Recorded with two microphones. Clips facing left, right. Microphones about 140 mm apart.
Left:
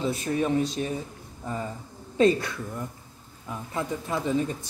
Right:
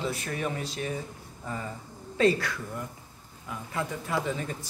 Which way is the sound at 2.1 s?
25° left (ahead or behind).